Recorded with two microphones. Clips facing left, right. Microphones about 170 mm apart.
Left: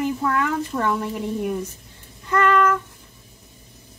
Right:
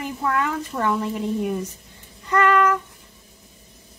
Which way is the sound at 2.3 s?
15° right (ahead or behind).